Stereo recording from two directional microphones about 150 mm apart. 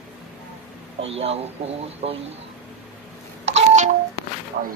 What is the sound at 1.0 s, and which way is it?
Speech, 40° right (ahead or behind).